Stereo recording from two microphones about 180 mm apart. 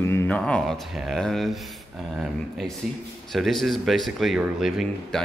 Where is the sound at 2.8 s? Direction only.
Centre (ahead or behind).